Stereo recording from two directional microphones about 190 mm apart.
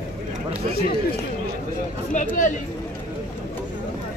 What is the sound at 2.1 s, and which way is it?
Speech, 40° left (ahead or behind).